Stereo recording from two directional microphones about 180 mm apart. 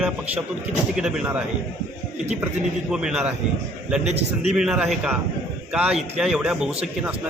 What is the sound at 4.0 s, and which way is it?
Speech, 35° right (ahead or behind).